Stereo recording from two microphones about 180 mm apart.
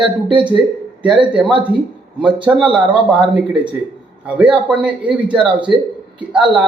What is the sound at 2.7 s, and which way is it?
A man's voice, 5° right (ahead or behind).